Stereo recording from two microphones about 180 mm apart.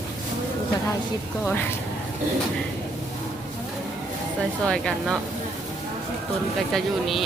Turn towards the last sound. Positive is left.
turn(degrees=0)  # may be behind; listen again after turning